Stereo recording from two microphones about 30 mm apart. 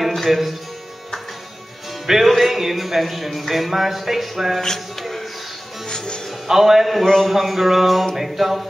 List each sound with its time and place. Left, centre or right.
0.0 s music: centre
2.2 s speech: centre
5.9 s music: left
6.4 s a man's voice: centre